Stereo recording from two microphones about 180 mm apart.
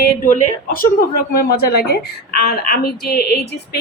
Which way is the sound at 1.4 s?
60° left (ahead or behind).